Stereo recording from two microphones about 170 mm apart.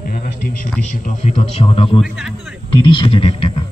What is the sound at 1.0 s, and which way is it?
Speech, 45° left (ahead or behind).